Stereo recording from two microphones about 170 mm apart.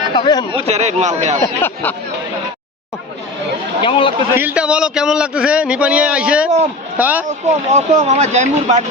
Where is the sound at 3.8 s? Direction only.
30° left (ahead or behind).